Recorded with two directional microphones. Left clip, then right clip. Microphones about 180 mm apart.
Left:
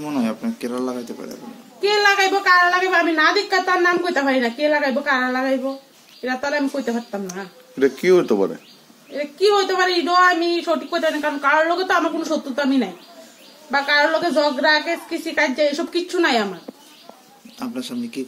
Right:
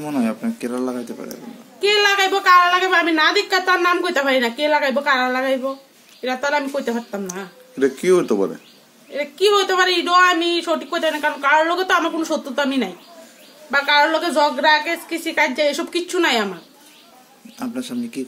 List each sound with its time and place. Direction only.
0.0 s speech: 45° right (ahead or behind)
1.8 s a woman's voice: 15° right (ahead or behind)
7.8 s speech: centre (ahead or behind)
9.1 s a woman's voice: 15° right (ahead or behind)
17.6 s speech: 45° right (ahead or behind)